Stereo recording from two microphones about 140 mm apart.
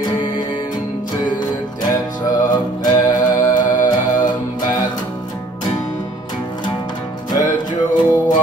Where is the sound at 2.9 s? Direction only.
25° left (ahead or behind).